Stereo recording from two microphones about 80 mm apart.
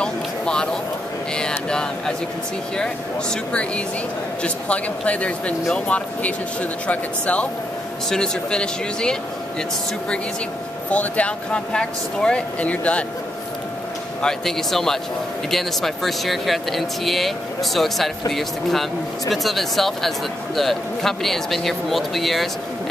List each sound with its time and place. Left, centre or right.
0.0 s a sound: centre
1.7 s speech: centre
10.9 s speech: centre
14.2 s speech: centre